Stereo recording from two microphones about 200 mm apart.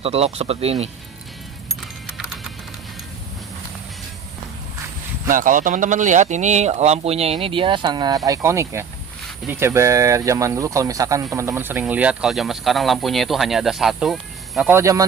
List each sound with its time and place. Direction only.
0.0 s speech: 30° right (ahead or behind)
2.0 s clip-clop: centre (ahead or behind)
5.3 s speech: 40° right (ahead or behind); by 14.7 s centre (ahead or behind)
14.7 s speech: 15° right (ahead or behind)